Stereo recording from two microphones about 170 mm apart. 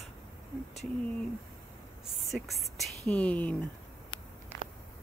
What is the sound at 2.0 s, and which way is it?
Speech, centre (ahead or behind).